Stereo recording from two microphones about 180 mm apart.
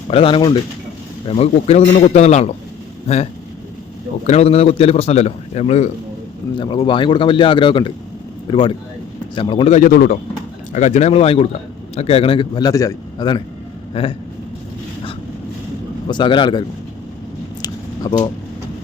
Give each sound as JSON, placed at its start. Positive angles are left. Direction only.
{"t": 0.1, "sound": "a man's voice", "side_deg": 30}
{"t": 4.3, "sound": "a man's voice", "side_deg": 35}
{"t": 6.6, "sound": "a man's voice", "side_deg": 25}
{"t": 9.7, "sound": "speech", "side_deg": 50}
{"t": 10.7, "sound": "a man's voice", "side_deg": 40}
{"t": 16.0, "sound": "a man's voice", "side_deg": 25}
{"t": 17.6, "sound": "a sound", "side_deg": 20}